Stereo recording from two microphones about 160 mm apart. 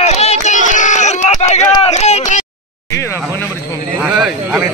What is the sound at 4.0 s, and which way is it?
Speech, 5° right (ahead or behind).